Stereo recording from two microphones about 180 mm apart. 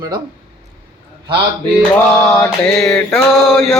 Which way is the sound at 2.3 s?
5° left (ahead or behind).